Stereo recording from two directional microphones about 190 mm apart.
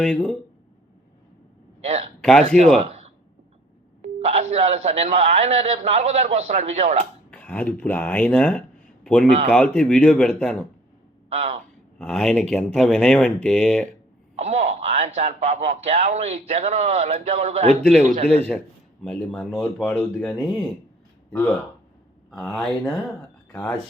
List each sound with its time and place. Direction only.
0.0 s speech: 5° left (ahead or behind)
2.2 s speech: 5° left (ahead or behind)
2.7 s speech: 35° right (ahead or behind)
4.0 s speech: 35° right (ahead or behind)
7.3 s speech: 10° left (ahead or behind)
11.3 s speech: 35° right (ahead or behind)
11.9 s speech: 5° left (ahead or behind)
14.3 s speech: 35° right (ahead or behind)
18.5 s speech: centre (ahead or behind)